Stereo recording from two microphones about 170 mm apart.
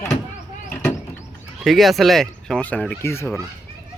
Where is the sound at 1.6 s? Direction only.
Centre (ahead or behind); by 3.3 s 15° left (ahead or behind).